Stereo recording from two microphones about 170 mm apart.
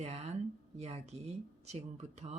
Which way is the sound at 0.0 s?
40° right (ahead or behind).